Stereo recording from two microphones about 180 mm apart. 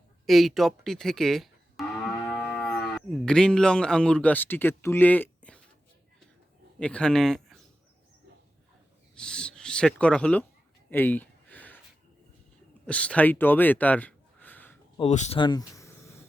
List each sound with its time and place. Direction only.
0.3 s music: centre (ahead or behind)
2.8 s speech: 5° left (ahead or behind)
6.7 s speech: 5° left (ahead or behind)
9.1 s speech: 5° left (ahead or behind)
10.8 s a sound: 10° left (ahead or behind)
12.8 s speech: 5° left (ahead or behind)
14.9 s speech: 35° left (ahead or behind)
15.4 s insect: 25° left (ahead or behind)